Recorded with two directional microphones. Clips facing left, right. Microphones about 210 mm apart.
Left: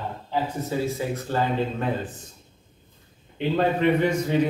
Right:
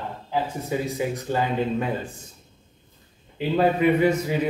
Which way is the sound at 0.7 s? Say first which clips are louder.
Even; 15° right (ahead or behind).